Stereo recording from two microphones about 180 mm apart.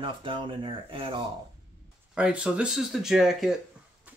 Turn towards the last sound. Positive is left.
turn(degrees=0)  # may be behind; listen again after turning